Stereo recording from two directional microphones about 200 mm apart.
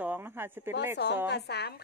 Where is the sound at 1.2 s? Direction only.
55° left (ahead or behind).